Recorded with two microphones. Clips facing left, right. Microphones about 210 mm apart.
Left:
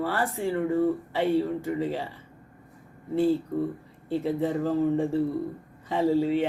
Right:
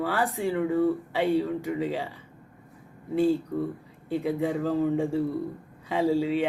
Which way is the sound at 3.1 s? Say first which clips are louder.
Even; 15° right (ahead or behind).